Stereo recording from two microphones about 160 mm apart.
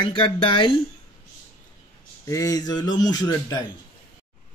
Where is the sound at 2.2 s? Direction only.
20° left (ahead or behind).